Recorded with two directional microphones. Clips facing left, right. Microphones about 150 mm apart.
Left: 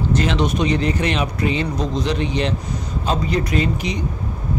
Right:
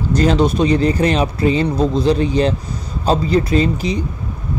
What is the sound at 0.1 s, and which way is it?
A man's voice, 35° right (ahead or behind).